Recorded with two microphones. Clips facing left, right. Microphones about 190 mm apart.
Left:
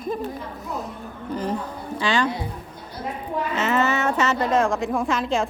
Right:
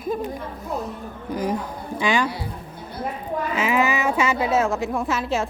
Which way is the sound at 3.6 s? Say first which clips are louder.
Even; 10° right (ahead or behind).